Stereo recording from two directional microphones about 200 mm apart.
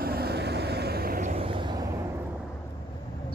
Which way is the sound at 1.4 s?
25° right (ahead or behind).